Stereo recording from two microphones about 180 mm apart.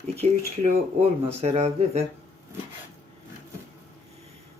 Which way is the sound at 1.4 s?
35° right (ahead or behind).